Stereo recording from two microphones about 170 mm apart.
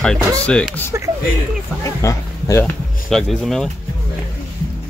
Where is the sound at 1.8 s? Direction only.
20° left (ahead or behind).